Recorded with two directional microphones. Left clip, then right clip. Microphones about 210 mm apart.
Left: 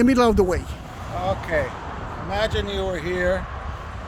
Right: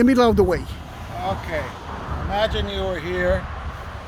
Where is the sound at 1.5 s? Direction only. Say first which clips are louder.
Left 8 dB; 25° left (ahead or behind).